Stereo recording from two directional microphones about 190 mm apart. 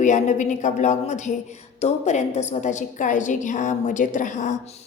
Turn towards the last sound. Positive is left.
turn(degrees=40)  # may be behind; listen again after turning